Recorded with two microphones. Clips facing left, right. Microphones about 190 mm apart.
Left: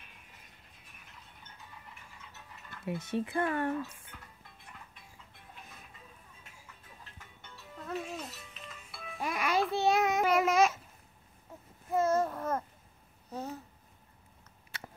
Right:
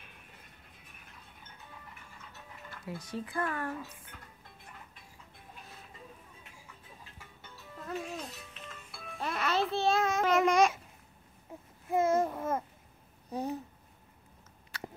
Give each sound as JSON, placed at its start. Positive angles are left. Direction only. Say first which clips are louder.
{"t": 2.7, "sound": "speech", "louder": "left 5 dB", "side_deg": 25}
{"t": 7.4, "sound": "music", "louder": "even", "side_deg": 0}
{"t": 10.3, "sound": "babbling", "louder": "right 2 dB", "side_deg": 5}
{"t": 11.9, "sound": "babbling", "louder": "right 1 dB", "side_deg": -15}